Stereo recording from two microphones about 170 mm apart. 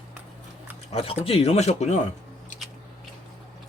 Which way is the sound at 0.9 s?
35° left (ahead or behind).